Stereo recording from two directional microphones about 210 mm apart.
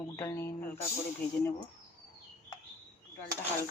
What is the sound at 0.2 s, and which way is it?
Speech, 10° left (ahead or behind).